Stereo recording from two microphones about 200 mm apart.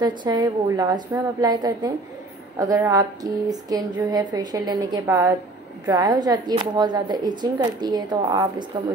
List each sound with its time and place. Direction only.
0.0 s speech: 20° right (ahead or behind)